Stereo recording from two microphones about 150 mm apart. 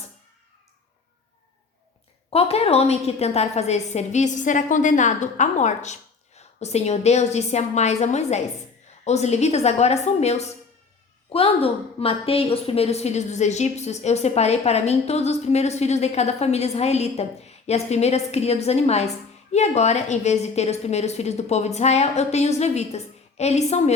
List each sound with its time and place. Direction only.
2.3 s a woman's voice: 40° left (ahead or behind)